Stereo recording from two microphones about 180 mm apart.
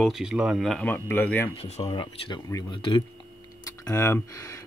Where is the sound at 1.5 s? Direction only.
35° left (ahead or behind).